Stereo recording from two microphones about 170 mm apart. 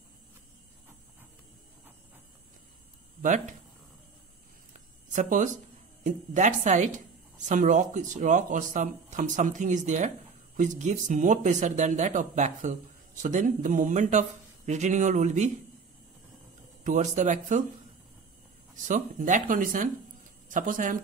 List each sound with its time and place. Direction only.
3.2 s speech: 50° right (ahead or behind)
4.7 s a sound: 45° right (ahead or behind)
6.0 s speech: 45° right (ahead or behind)
16.8 s speech: 45° right (ahead or behind)
18.9 s speech: 50° right (ahead or behind)